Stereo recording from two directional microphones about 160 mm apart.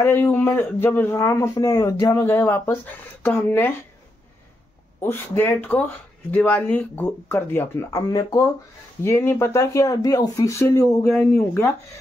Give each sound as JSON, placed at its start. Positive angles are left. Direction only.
{"t": 0.0, "sound": "speech", "side_deg": 15}
{"t": 5.0, "sound": "speech", "side_deg": 15}